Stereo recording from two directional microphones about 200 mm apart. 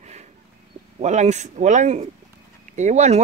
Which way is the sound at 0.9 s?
35° right (ahead or behind).